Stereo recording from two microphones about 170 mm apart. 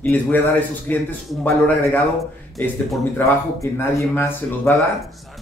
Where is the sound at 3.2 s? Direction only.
10° left (ahead or behind).